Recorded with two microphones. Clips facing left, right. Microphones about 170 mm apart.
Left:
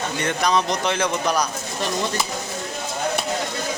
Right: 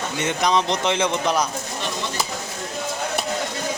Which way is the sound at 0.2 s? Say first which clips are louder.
Right 1 dB; 20° right (ahead or behind).